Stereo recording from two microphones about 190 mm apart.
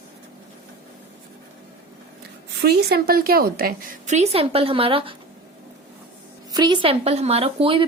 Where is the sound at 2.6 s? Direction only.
55° right (ahead or behind); by 5.1 s 30° right (ahead or behind).